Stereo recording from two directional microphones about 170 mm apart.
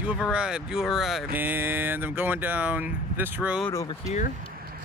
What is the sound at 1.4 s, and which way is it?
Speech, 10° right (ahead or behind).